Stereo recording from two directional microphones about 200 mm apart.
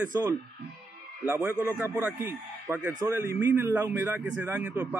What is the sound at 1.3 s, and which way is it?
Speech, 5° right (ahead or behind).